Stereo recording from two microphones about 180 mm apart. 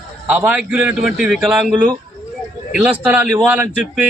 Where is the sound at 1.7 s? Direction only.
25° right (ahead or behind).